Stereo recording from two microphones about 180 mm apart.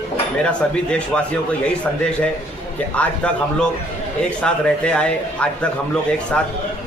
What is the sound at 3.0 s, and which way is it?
A man's voice, 5° left (ahead or behind).